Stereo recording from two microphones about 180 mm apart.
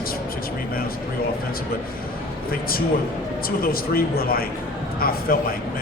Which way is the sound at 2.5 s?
55° left (ahead or behind).